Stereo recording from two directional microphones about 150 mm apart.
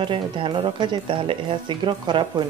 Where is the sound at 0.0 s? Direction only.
35° right (ahead or behind).